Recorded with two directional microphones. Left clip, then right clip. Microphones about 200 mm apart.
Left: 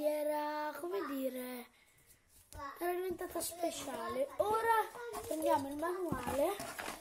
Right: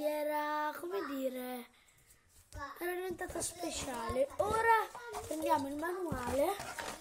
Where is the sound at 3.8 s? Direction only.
15° right (ahead or behind).